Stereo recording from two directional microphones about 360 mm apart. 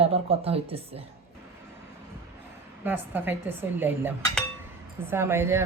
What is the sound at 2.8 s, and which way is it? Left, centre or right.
Speech, centre.